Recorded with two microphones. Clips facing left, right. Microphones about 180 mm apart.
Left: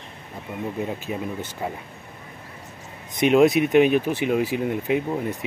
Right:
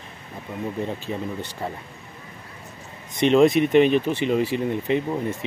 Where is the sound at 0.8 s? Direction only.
10° left (ahead or behind).